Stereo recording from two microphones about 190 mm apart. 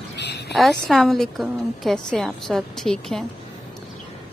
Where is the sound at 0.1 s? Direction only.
65° left (ahead or behind).